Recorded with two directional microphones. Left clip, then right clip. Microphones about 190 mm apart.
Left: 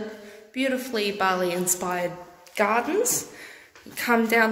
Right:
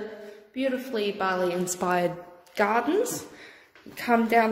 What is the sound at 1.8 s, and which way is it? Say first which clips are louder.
Speech: right 2 dB; 30° right (ahead or behind).